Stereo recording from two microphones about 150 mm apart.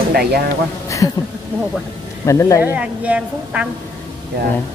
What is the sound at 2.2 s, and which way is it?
Speech, 20° left (ahead or behind).